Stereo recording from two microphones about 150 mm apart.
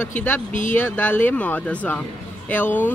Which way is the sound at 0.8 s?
10° left (ahead or behind).